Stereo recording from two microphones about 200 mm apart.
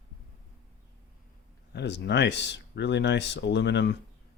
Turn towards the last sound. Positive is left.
turn(degrees=60)  # may be behind; listen again after turning